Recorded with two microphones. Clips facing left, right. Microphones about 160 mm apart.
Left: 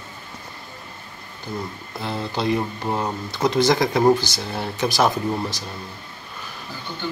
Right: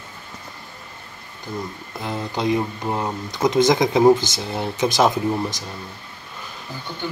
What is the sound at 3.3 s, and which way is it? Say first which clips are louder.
Speech: right 2 dB; 15° right (ahead or behind).